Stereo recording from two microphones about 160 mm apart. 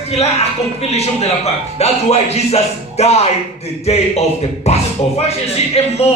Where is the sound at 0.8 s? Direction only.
40° left (ahead or behind).